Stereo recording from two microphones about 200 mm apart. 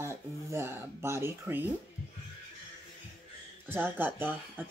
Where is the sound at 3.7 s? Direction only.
10° right (ahead or behind).